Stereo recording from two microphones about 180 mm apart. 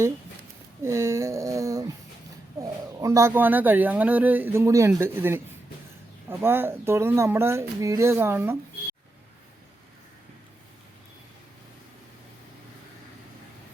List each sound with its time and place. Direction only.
0.8 s a sound: 15° right (ahead or behind)
2.6 s speech: 15° right (ahead or behind)
6.4 s speech: 10° right (ahead or behind)